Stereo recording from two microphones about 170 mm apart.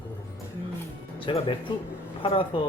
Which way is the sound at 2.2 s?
30° left (ahead or behind).